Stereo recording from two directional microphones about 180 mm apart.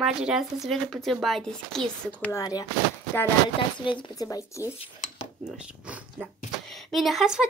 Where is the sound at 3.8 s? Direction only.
25° left (ahead or behind).